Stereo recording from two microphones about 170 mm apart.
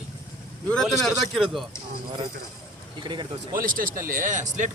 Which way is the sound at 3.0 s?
25° right (ahead or behind).